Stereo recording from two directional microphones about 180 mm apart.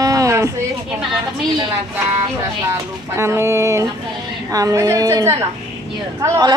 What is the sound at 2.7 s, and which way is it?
A woman's voice, 15° right (ahead or behind).